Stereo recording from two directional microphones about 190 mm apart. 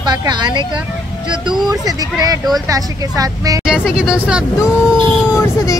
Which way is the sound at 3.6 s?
5° right (ahead or behind).